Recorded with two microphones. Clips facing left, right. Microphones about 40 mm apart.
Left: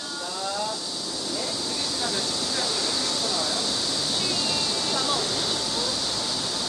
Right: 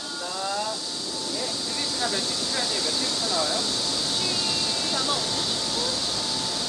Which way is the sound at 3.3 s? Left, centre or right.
Right.